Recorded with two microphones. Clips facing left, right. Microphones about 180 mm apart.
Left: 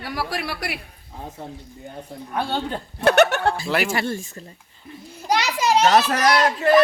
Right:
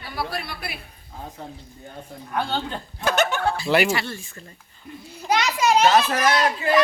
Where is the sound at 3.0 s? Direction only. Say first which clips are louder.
Left 6 dB; 65° left (ahead or behind).